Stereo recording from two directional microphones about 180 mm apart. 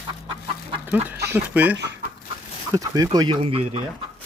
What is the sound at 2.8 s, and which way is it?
Speech, 20° right (ahead or behind).